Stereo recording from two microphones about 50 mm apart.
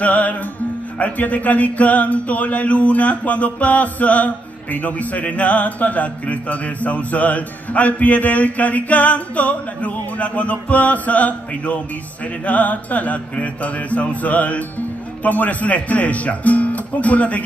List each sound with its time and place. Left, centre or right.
0.0 s music: left